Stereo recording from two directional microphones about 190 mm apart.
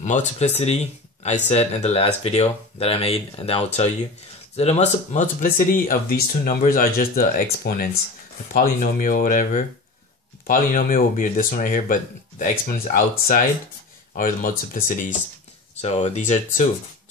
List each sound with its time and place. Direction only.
0.0 s speech: 40° left (ahead or behind)
15.8 s speech: 35° left (ahead or behind)